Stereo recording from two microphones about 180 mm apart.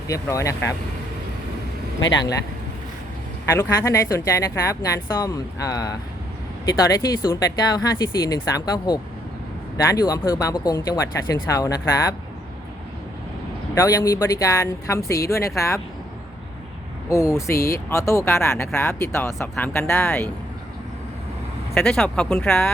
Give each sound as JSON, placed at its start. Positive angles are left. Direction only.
{"t": 0.1, "sound": "speech", "side_deg": 15}
{"t": 3.4, "sound": "speech", "side_deg": 15}
{"t": 13.7, "sound": "speech", "side_deg": 15}
{"t": 17.1, "sound": "speech", "side_deg": 15}
{"t": 21.8, "sound": "speech", "side_deg": 5}